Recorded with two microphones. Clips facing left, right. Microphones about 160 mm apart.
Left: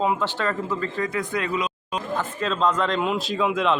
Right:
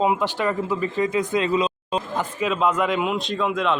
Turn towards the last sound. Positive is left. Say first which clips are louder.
# even
turn(degrees=0)  # may be behind; listen again after turning